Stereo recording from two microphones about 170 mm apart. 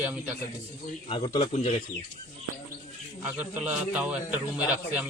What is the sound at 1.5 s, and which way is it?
Speech, 40° left (ahead or behind).